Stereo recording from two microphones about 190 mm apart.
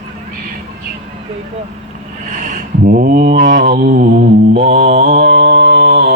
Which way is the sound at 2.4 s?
45° right (ahead or behind).